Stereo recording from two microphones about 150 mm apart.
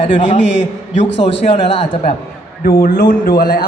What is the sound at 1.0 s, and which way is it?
A man's voice, 45° left (ahead or behind).